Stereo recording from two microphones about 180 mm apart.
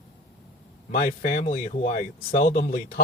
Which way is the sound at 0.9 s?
55° left (ahead or behind).